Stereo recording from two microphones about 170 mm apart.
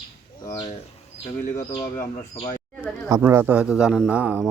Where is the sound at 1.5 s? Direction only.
15° left (ahead or behind).